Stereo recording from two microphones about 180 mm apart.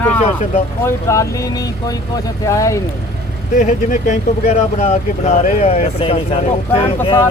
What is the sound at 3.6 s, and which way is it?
Speech, 40° left (ahead or behind).